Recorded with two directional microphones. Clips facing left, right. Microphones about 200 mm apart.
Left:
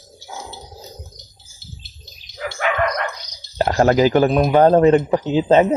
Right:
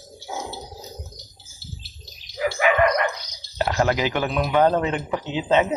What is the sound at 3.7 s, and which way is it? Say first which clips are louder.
Speech: left 8 dB; 40° left (ahead or behind).